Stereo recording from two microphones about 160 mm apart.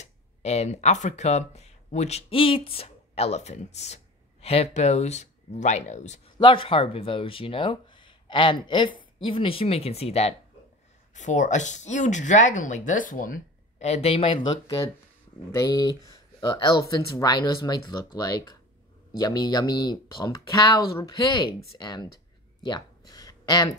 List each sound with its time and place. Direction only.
0.0 s speech: 45° left (ahead or behind)
6.3 s speech: 30° left (ahead or behind)
22.7 s a sound: 25° left (ahead or behind)